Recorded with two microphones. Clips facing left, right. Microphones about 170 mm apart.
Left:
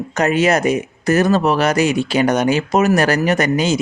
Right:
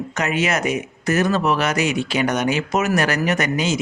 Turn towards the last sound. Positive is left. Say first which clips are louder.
# left 5 dB
turn(degrees=35)  # may be behind; listen again after turning